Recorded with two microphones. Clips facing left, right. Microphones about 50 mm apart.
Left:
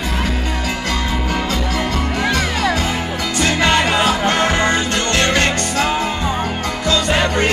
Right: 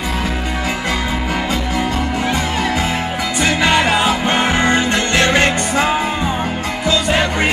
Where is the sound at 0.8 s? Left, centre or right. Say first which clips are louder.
Right 1 dB; centre.